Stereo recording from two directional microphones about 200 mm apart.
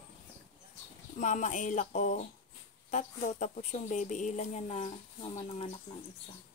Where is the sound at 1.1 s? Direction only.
40° left (ahead or behind).